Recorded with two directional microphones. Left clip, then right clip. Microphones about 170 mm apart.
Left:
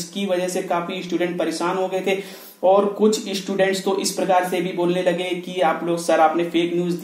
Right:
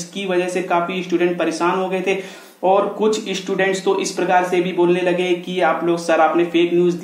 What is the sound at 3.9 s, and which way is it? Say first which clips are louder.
Speech: right 2 dB; 50° left (ahead or behind).